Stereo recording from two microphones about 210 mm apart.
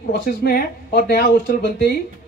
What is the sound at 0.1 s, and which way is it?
Speech, 45° left (ahead or behind).